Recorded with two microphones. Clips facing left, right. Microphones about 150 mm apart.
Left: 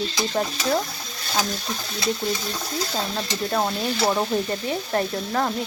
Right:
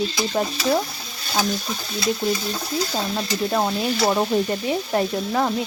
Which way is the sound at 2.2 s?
Centre (ahead or behind).